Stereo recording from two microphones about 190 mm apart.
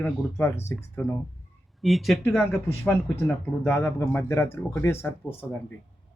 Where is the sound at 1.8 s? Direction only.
Centre (ahead or behind).